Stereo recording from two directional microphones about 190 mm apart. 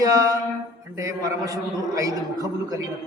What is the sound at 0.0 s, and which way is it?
Music, 15° right (ahead or behind).